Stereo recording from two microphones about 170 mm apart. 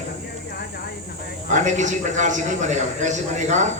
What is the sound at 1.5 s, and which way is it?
A man's voice, 45° right (ahead or behind).